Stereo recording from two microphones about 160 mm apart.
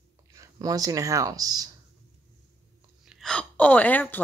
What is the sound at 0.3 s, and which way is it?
Speech, 20° right (ahead or behind).